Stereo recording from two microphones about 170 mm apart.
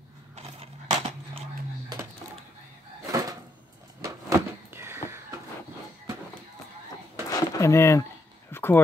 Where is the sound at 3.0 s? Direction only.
20° right (ahead or behind).